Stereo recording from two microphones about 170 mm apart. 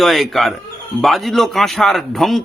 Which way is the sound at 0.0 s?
Centre (ahead or behind).